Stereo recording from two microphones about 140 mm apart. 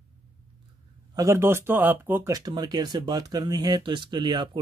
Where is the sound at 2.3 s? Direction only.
30° right (ahead or behind).